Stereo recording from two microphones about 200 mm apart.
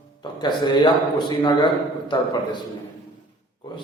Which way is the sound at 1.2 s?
20° left (ahead or behind).